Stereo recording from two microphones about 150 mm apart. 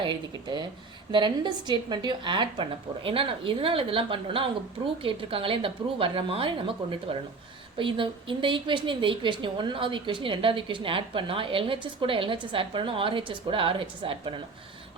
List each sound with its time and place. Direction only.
0.0 s a woman's voice: 30° right (ahead or behind)